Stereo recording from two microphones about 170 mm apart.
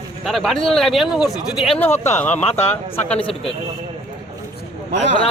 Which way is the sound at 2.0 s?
15° left (ahead or behind).